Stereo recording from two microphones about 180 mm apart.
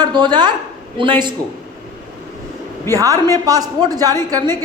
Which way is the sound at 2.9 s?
20° right (ahead or behind).